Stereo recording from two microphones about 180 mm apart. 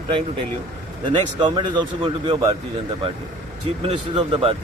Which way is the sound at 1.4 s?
25° right (ahead or behind).